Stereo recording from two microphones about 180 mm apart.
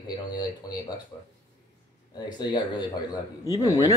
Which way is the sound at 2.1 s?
25° left (ahead or behind).